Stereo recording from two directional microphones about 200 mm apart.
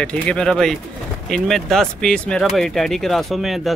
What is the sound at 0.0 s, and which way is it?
Speech, 5° left (ahead or behind).